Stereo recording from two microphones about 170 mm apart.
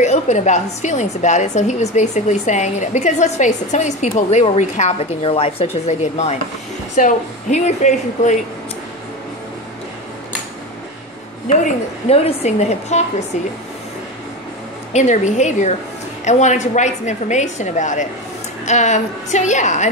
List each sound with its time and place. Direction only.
0.0 s a woman's voice: 45° left (ahead or behind)
11.4 s a woman's voice: 40° left (ahead or behind)
14.9 s a woman's voice: 45° left (ahead or behind)